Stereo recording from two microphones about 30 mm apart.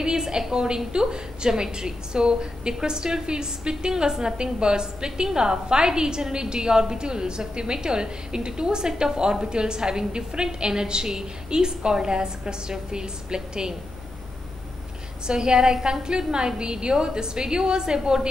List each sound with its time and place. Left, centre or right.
0.0 s a sound: right
0.5 s a woman's voice: right
15.2 s a woman's voice: right